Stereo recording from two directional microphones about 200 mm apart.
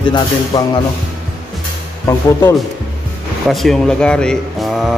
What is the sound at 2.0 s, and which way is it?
Speech, 15° left (ahead or behind).